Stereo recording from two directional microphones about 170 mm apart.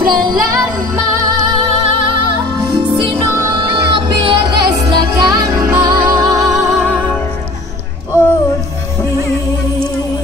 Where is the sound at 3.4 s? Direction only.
25° right (ahead or behind).